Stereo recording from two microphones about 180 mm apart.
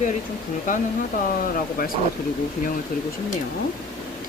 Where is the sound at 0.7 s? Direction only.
45° left (ahead or behind).